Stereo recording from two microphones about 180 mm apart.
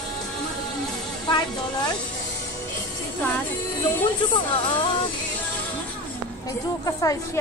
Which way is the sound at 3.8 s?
25° left (ahead or behind).